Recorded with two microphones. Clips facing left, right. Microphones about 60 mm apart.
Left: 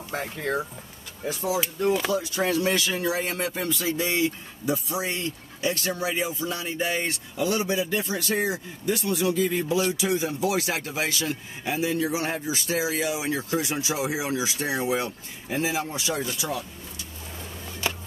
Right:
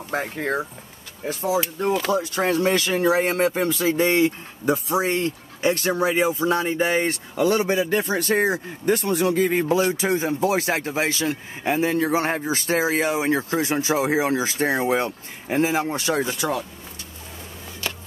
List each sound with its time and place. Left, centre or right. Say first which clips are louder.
0.1 s speech: right 4 dB; right
2.0 s speech: right 3 dB; right
17.8 s a sound: left 1 dB; centre